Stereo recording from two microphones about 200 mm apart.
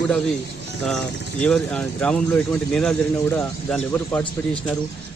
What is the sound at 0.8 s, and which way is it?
Speech, 5° left (ahead or behind).